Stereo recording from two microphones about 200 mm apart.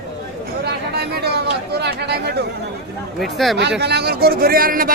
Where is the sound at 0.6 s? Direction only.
55° right (ahead or behind).